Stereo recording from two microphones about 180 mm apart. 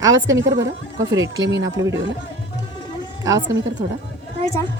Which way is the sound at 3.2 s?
20° right (ahead or behind).